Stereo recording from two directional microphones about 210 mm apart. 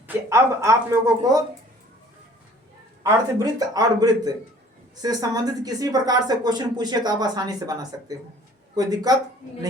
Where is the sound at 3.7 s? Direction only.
20° right (ahead or behind).